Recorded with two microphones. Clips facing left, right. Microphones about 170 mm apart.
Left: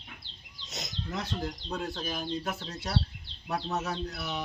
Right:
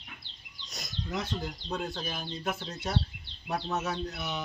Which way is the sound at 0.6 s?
20° left (ahead or behind).